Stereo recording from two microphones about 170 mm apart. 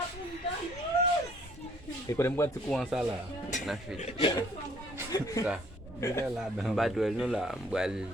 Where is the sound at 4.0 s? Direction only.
35° left (ahead or behind).